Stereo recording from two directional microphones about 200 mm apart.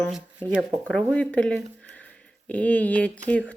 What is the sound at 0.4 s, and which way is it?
Speech, 25° right (ahead or behind).